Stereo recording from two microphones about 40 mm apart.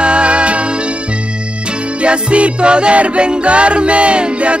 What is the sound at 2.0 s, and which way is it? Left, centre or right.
Music, right.